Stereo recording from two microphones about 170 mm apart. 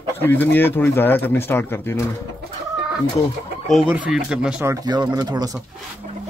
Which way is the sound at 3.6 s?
5° right (ahead or behind).